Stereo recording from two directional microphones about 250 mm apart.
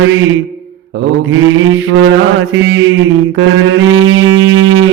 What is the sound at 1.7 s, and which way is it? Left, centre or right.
Mantra, right.